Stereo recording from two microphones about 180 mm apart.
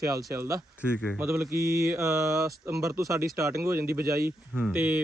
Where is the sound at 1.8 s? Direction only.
15° right (ahead or behind).